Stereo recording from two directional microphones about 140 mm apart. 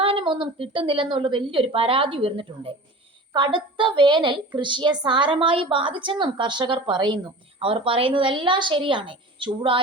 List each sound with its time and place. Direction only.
0.0 s a woman's voice: 40° right (ahead or behind)